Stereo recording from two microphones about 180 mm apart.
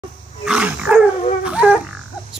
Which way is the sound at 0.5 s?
5° right (ahead or behind).